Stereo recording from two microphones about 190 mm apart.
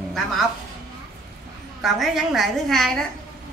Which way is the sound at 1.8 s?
Centre (ahead or behind).